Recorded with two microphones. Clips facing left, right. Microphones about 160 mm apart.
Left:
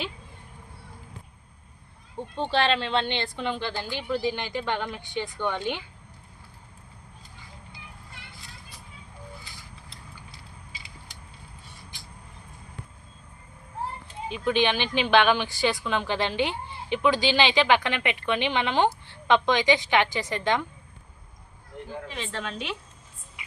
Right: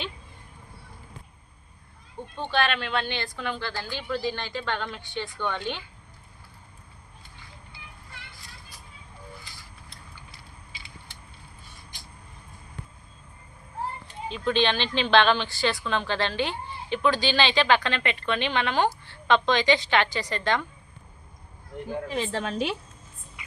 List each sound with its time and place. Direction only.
2.1 s speech: 30° left (ahead or behind)
14.3 s speech: 15° left (ahead or behind)
22.0 s a woman's voice: 40° right (ahead or behind)